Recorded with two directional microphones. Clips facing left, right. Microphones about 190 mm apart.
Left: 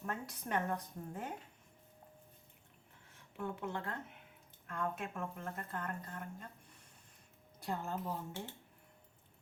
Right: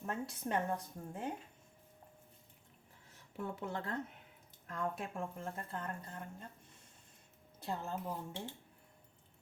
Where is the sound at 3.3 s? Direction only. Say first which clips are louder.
Even; 40° right (ahead or behind).